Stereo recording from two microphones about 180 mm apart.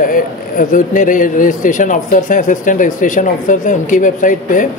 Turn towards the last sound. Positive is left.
turn(degrees=45)  # may be behind; listen again after turning